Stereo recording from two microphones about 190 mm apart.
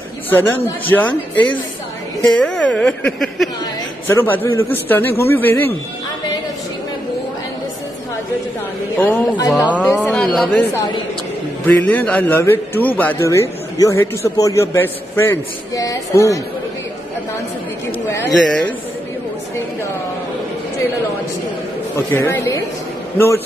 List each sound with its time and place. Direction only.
0.3 s a man's voice: 10° left (ahead or behind)
8.9 s a man's voice: 10° left (ahead or behind)
10.7 s a man's voice: 20° left (ahead or behind)
18.1 s a man's voice: 10° left (ahead or behind)
21.9 s a man's voice: 10° left (ahead or behind)